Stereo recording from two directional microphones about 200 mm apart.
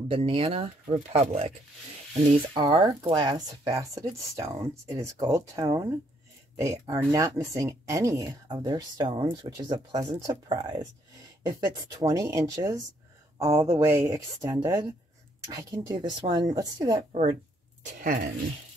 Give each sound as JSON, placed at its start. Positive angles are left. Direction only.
{"t": 0.1, "sound": "speech", "side_deg": -25}
{"t": 2.5, "sound": "speech", "side_deg": -20}
{"t": 17.1, "sound": "speech", "side_deg": -30}